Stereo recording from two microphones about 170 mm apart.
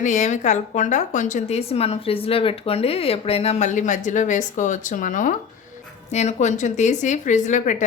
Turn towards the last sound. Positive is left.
turn(degrees=45)  # may be behind; listen again after turning